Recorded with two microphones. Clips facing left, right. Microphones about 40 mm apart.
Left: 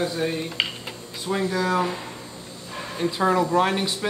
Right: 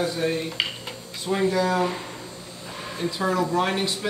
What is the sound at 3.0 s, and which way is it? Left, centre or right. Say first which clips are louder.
Speech: left 3 dB; centre.